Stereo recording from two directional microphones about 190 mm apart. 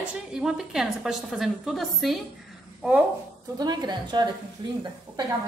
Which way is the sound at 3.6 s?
20° right (ahead or behind).